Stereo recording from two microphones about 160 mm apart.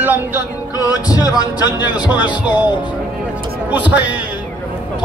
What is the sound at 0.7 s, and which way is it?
Music, 20° left (ahead or behind).